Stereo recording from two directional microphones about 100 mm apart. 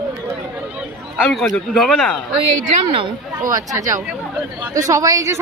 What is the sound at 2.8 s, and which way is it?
Speech, 60° right (ahead or behind).